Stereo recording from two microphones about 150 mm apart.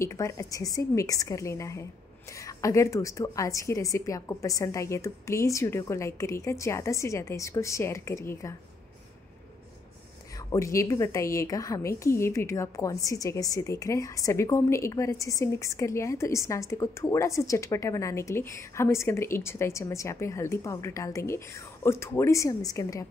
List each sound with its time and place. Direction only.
0.0 s a woman's voice: 20° left (ahead or behind)
10.5 s a woman's voice: 20° left (ahead or behind)